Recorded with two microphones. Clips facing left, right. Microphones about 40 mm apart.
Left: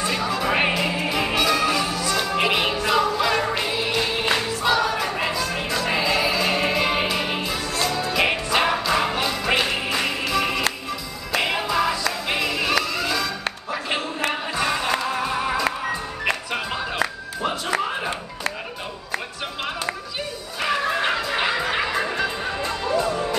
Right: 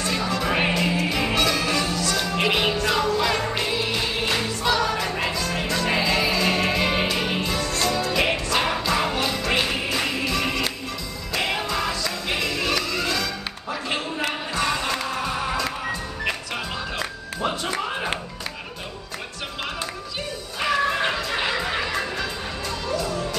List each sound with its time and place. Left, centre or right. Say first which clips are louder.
0.0 s music: left 1 dB; centre
13.7 s a sound: even; centre
15.0 s music: left 2 dB; centre
20.6 s music: even; centre; by 23.2 s left